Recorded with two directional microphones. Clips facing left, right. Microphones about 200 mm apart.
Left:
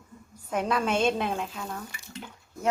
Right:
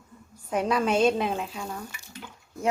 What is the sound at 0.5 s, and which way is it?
Speech, 5° right (ahead or behind).